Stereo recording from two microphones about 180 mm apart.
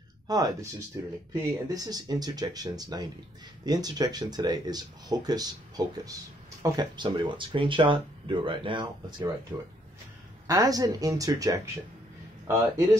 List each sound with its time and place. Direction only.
0.3 s speech: 20° right (ahead or behind)
1.7 s speech: 20° right (ahead or behind)
9.5 s speech: 15° right (ahead or behind)